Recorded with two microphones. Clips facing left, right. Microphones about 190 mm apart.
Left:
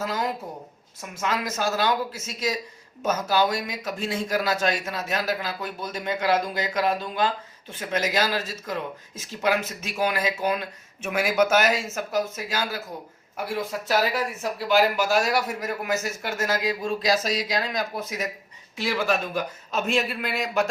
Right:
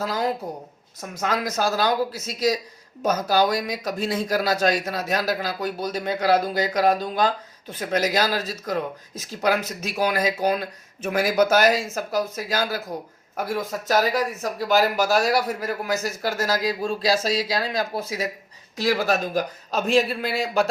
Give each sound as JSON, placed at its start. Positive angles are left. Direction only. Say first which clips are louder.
{"t": 0.0, "sound": "a woman's voice", "louder": "right 3 dB", "side_deg": -35}